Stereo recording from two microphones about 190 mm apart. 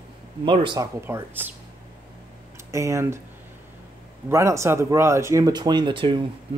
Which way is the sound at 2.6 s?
15° right (ahead or behind).